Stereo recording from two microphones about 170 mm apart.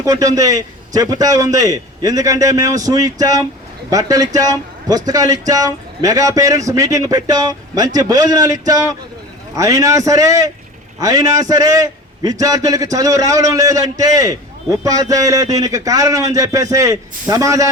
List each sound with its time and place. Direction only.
0.0 s a man's voice: 20° right (ahead or behind)